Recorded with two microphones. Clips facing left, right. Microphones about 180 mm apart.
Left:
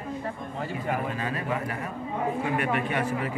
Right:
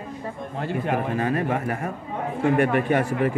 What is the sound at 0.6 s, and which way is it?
Speech, 75° right (ahead or behind).